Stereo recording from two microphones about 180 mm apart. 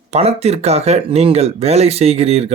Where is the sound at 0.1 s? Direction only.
35° right (ahead or behind).